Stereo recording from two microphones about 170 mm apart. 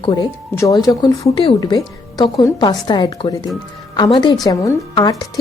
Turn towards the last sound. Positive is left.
turn(degrees=20)  # may be behind; listen again after turning